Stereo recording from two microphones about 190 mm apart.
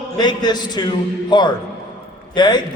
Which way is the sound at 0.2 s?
20° left (ahead or behind).